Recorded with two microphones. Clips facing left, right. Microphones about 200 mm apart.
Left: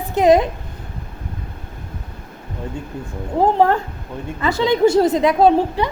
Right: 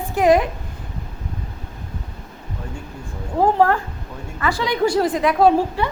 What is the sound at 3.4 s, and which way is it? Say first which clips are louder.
A woman's voice: left 1 dB; 20° left (ahead or behind).